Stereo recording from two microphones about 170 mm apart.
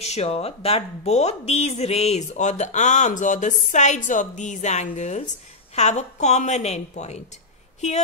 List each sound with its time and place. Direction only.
0.0 s speech: 40° left (ahead or behind)